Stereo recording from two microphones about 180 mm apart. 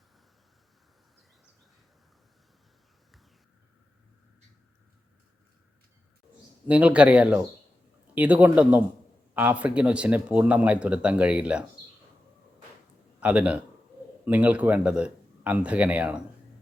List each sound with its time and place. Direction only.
6.7 s speech: 10° right (ahead or behind)
13.1 s a man's voice: 5° right (ahead or behind)